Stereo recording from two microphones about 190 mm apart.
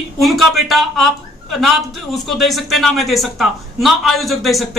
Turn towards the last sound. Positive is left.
turn(degrees=0)  # may be behind; listen again after turning